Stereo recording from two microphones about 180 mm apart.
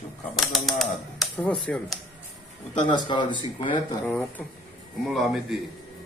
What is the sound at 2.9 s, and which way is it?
Speech, 25° left (ahead or behind).